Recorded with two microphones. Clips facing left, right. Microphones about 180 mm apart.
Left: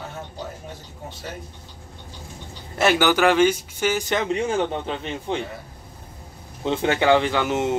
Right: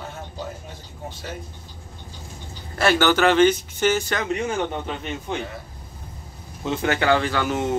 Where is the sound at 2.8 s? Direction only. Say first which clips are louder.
Even; 15° left (ahead or behind).